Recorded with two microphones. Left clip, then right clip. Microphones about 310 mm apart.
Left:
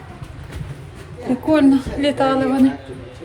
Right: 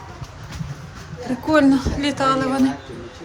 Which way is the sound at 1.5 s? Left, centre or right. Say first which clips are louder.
Left 1 dB; centre.